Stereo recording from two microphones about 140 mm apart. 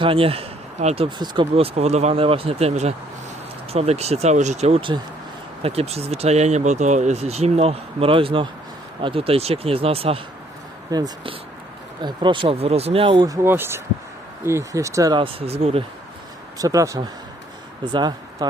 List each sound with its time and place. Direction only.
0.0 s speech: 40° right (ahead or behind)
1.2 s speech: 30° right (ahead or behind)
1.5 s speech: 45° right (ahead or behind)
10.9 s speech: 35° right (ahead or behind)
13.2 s speech: 20° right (ahead or behind)
15.2 s speech: 45° right (ahead or behind)
16.6 s speech: 25° right (ahead or behind)